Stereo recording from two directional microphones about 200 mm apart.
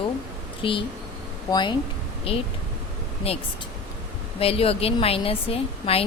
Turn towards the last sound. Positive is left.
turn(degrees=30)  # may be behind; listen again after turning